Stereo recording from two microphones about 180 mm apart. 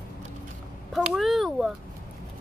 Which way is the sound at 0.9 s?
Centre (ahead or behind).